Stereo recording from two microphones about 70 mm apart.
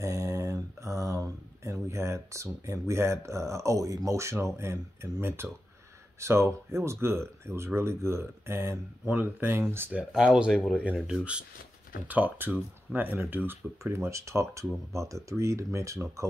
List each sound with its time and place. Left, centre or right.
0.0 s a sound: right
4.6 s speech: right
9.1 s speech: right
10.1 s speech: centre
12.1 s speech: right